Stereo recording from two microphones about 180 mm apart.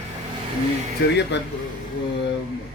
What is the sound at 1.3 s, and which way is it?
Speech, 75° left (ahead or behind).